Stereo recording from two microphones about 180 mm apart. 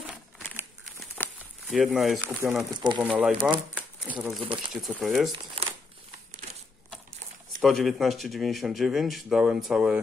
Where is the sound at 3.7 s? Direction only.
5° right (ahead or behind).